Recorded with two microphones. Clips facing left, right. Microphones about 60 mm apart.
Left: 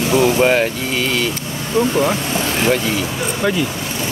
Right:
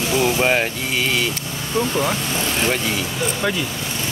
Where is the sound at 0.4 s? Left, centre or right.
Centre.